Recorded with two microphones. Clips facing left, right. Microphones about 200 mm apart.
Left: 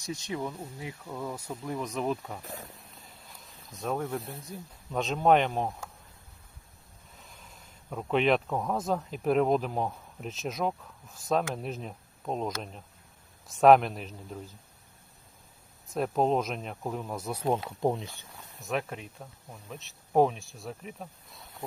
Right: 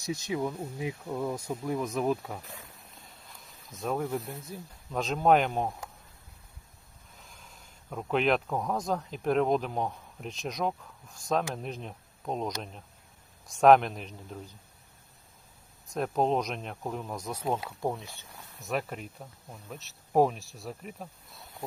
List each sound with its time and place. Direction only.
0.1 s speech: 10° right (ahead or behind)
3.7 s speech: centre (ahead or behind)
7.2 s speech: centre (ahead or behind)
13.6 s speech: centre (ahead or behind)
16.0 s speech: centre (ahead or behind)
17.6 s speech: 20° left (ahead or behind)
18.6 s speech: centre (ahead or behind)